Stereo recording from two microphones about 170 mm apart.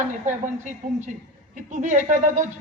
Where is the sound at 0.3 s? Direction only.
45° right (ahead or behind).